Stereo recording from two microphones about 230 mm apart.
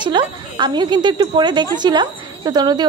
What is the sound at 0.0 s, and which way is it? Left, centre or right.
A woman's voice, centre.